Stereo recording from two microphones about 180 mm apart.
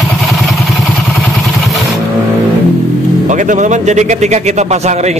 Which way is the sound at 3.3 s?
45° right (ahead or behind).